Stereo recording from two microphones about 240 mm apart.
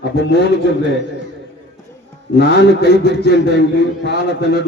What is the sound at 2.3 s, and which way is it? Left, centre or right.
A man's voice, left.